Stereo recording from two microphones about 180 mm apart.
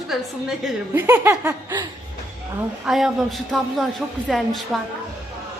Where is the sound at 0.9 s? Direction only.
10° right (ahead or behind).